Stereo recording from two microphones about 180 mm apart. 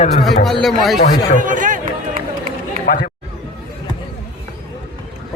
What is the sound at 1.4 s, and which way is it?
Speech, 45° right (ahead or behind).